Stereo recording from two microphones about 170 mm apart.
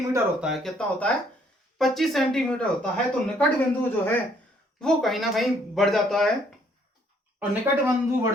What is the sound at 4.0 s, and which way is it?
Speech, 10° left (ahead or behind).